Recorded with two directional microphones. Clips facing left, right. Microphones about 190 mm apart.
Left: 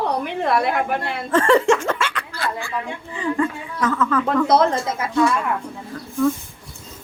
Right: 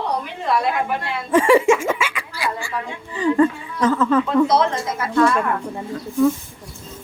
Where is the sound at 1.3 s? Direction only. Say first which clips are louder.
Right 2 dB; 10° right (ahead or behind).